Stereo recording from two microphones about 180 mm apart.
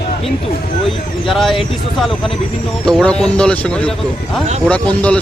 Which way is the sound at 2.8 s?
5° left (ahead or behind).